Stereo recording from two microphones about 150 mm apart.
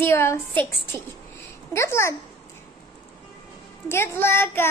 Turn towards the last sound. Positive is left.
turn(degrees=15)  # may be behind; listen again after turning